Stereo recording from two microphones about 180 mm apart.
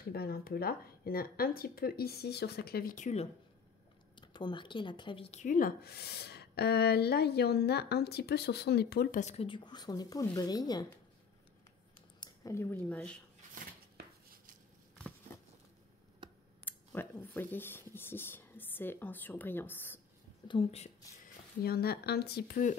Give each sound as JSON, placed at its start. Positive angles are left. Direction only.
{"t": 0.1, "sound": "speech", "side_deg": 60}
{"t": 4.1, "sound": "speech", "side_deg": 25}
{"t": 9.2, "sound": "speech", "side_deg": 35}
{"t": 12.2, "sound": "speech", "side_deg": 15}
{"t": 16.6, "sound": "speech", "side_deg": 10}
{"t": 20.4, "sound": "a woman's voice", "side_deg": 30}
{"t": 21.6, "sound": "speech", "side_deg": 60}